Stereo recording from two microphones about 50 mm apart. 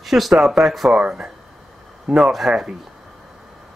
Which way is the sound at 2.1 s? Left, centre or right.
Centre.